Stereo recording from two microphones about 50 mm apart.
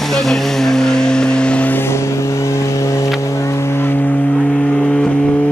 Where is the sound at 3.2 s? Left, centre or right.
Left.